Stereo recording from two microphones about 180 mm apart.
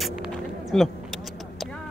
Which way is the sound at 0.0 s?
Centre (ahead or behind).